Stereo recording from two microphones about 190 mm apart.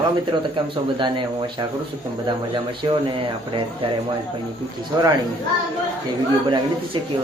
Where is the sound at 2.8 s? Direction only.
25° right (ahead or behind).